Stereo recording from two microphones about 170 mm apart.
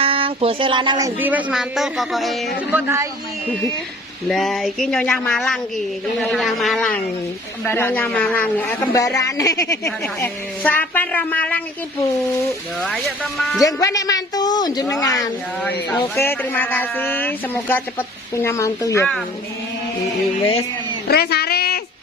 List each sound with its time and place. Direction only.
0.0 s speech: 30° right (ahead or behind); by 2.3 s centre (ahead or behind)
2.6 s speech: 15° right (ahead or behind)
4.3 s a woman's voice: centre (ahead or behind)
12.8 s speech: 5° left (ahead or behind)
13.6 s speech: 20° left (ahead or behind)
16.0 s a woman's voice: 15° left (ahead or behind)
21.1 s a sound: 70° left (ahead or behind)